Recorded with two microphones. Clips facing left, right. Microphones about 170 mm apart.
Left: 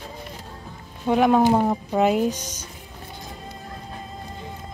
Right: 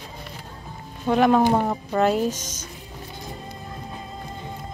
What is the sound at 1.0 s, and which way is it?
Speech, 10° left (ahead or behind).